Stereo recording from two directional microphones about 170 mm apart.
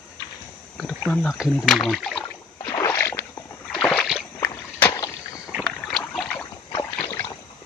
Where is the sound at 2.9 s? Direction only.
10° left (ahead or behind).